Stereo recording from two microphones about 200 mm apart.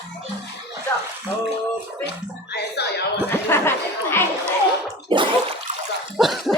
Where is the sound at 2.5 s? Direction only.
55° left (ahead or behind).